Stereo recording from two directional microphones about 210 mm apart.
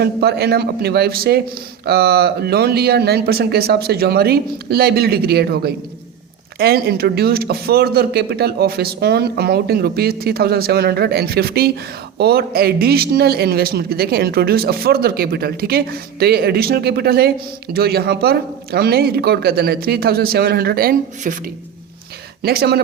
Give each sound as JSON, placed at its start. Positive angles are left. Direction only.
{"t": 0.0, "sound": "speech", "side_deg": -50}
{"t": 22.4, "sound": "speech", "side_deg": -50}